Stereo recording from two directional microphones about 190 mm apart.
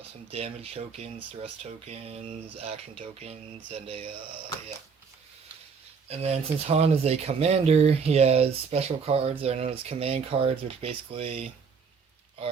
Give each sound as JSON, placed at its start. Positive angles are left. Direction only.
{"t": 0.0, "sound": "speech", "side_deg": -30}
{"t": 6.1, "sound": "speech", "side_deg": -35}